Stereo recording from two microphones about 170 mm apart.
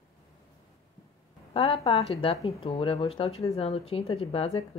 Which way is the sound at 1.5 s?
35° left (ahead or behind).